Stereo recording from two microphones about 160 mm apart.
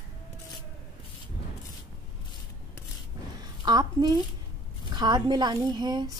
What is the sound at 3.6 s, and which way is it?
A woman's voice, 25° right (ahead or behind).